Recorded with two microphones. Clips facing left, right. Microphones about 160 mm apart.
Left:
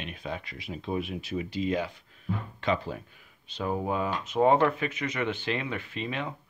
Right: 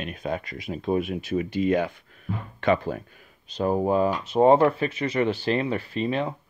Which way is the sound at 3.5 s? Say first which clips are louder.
Right 7 dB; 40° right (ahead or behind).